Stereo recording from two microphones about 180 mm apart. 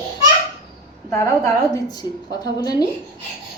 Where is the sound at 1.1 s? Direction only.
15° left (ahead or behind).